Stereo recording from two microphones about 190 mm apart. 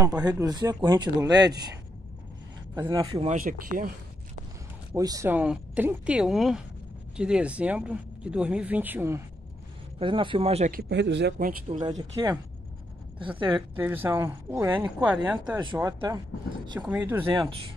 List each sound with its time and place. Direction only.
0.0 s speech: 20° right (ahead or behind)
3.2 s speech: 40° right (ahead or behind)
4.9 s speech: 20° right (ahead or behind)
9.9 s speech: 25° right (ahead or behind)
10.7 s a man's voice: 60° right (ahead or behind)
11.3 s speech: 45° right (ahead or behind)
11.8 s speech: 20° right (ahead or behind)
13.6 s speech: 10° right (ahead or behind)
16.8 s speech: 10° right (ahead or behind)
17.3 s speech: 25° right (ahead or behind)